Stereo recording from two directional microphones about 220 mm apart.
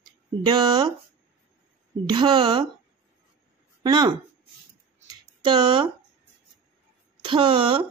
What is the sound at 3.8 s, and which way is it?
Speech, 20° right (ahead or behind).